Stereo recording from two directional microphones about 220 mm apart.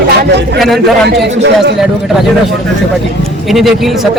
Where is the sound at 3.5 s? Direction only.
Centre (ahead or behind).